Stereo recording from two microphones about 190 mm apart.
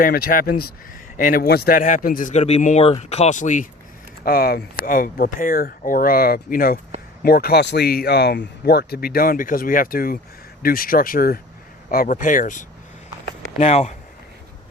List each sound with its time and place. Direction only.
0.0 s speech: 50° left (ahead or behind)
4.2 s speech: 50° left (ahead or behind); by 13.9 s 35° left (ahead or behind)